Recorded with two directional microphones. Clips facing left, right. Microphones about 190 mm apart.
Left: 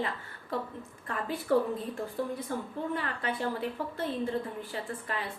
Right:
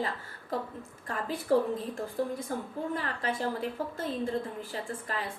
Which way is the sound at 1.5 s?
35° right (ahead or behind).